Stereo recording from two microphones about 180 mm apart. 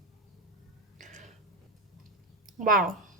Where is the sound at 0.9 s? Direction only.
45° right (ahead or behind).